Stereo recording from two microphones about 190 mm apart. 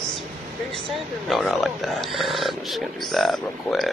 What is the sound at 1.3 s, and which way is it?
Speech, centre (ahead or behind).